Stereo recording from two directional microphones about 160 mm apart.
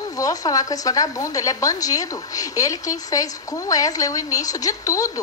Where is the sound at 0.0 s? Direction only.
20° left (ahead or behind).